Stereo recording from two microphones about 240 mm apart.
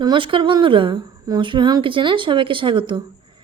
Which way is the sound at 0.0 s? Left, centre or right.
Centre.